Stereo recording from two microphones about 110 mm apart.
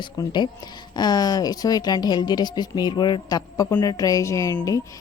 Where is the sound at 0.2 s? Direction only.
40° left (ahead or behind).